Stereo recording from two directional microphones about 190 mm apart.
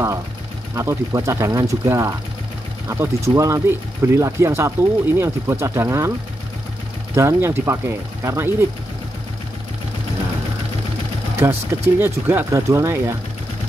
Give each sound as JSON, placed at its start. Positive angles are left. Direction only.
{"t": 0.7, "sound": "speech", "side_deg": -15}
{"t": 7.2, "sound": "speech", "side_deg": -15}
{"t": 11.4, "sound": "speech", "side_deg": -15}